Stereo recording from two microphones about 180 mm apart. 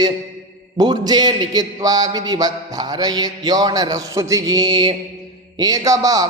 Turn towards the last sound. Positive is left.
turn(degrees=-20)  # may be behind; listen again after turning